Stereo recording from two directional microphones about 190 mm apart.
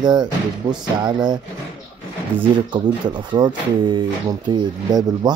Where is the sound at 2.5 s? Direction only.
25° right (ahead or behind).